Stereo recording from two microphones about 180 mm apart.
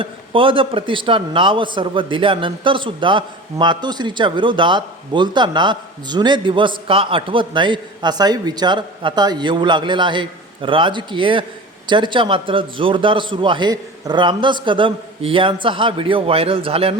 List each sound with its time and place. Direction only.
0.0 s a man's voice: 30° right (ahead or behind)